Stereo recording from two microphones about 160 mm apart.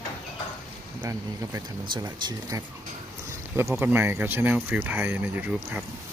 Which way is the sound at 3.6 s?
15° right (ahead or behind).